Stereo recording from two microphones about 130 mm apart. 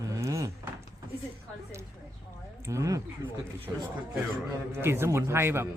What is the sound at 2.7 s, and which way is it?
A man's voice, 25° right (ahead or behind).